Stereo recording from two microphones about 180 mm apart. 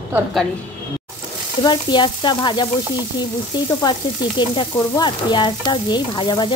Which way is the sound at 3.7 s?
20° left (ahead or behind).